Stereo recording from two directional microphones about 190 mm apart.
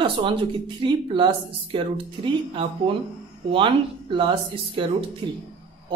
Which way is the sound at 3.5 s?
25° right (ahead or behind).